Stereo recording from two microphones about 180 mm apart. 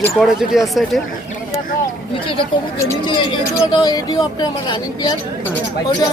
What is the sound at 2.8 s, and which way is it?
Speech, 20° left (ahead or behind).